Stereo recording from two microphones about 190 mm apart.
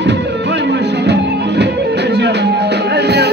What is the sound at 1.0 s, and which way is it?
Music, 65° right (ahead or behind).